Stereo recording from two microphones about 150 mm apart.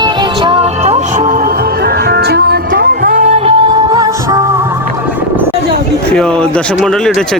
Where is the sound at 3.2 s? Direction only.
45° right (ahead or behind).